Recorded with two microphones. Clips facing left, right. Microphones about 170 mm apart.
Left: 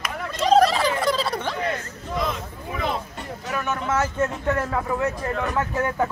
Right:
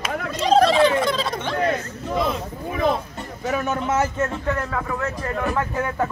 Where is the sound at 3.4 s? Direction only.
35° right (ahead or behind).